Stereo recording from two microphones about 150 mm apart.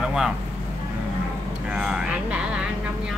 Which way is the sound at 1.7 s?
5° right (ahead or behind).